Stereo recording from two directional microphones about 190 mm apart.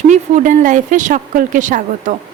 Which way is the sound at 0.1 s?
40° right (ahead or behind).